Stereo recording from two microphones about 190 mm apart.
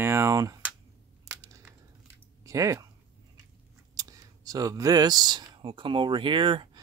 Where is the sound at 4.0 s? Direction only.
20° right (ahead or behind).